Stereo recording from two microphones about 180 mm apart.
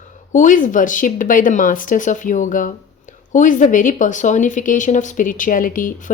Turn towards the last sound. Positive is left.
turn(degrees=50)  # may be behind; listen again after turning